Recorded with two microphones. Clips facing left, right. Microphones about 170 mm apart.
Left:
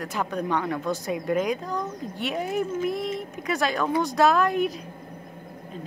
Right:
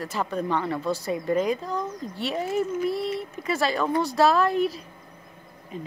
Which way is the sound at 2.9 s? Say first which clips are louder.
Right 1 dB; 30° right (ahead or behind).